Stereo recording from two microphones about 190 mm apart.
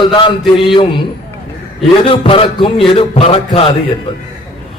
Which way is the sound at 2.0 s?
30° left (ahead or behind).